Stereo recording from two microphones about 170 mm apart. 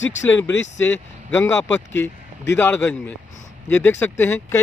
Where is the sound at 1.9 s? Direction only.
90° left.